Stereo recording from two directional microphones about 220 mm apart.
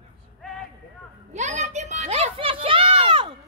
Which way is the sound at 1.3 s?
30° right (ahead or behind).